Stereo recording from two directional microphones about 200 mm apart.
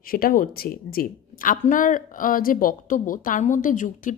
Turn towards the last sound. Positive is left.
turn(degrees=40)  # may be behind; listen again after turning